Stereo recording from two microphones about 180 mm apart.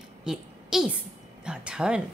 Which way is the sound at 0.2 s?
5° right (ahead or behind).